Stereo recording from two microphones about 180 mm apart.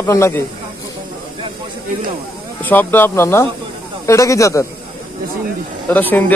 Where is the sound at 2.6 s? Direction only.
10° left (ahead or behind).